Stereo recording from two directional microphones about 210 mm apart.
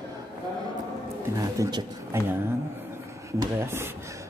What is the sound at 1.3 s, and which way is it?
Speech, 15° right (ahead or behind).